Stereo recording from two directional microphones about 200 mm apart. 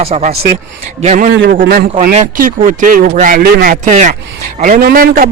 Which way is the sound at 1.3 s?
60° right (ahead or behind).